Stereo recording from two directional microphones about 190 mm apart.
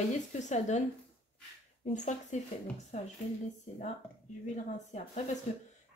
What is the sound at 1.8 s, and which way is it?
Speech, 40° left (ahead or behind).